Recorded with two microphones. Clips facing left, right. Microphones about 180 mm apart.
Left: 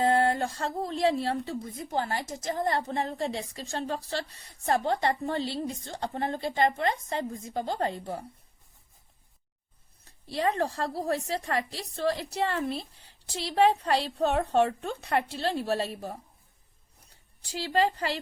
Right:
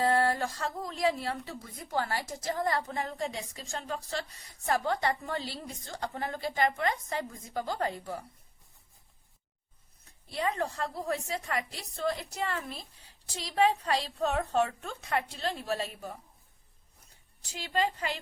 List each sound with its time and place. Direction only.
0.0 s a woman's voice: 25° left (ahead or behind)
4.4 s a woman's voice: 60° left (ahead or behind)
4.6 s a woman's voice: 25° left (ahead or behind)
10.0 s a woman's voice: 35° left (ahead or behind)
17.6 s a woman's voice: 35° left (ahead or behind)